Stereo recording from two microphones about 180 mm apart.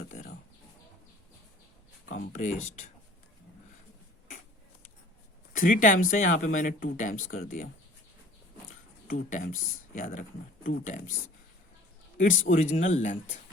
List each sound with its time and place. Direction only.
0.1 s a sound: 50° left (ahead or behind)
2.0 s speech: 55° left (ahead or behind)
5.5 s speech: 50° left (ahead or behind)
9.0 s speech: 45° left (ahead or behind)
12.1 s speech: 45° left (ahead or behind)